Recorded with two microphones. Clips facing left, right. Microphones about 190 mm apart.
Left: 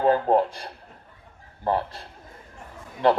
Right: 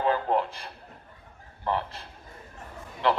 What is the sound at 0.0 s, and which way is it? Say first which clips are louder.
A man's voice: left 6 dB; 40° left (ahead or behind).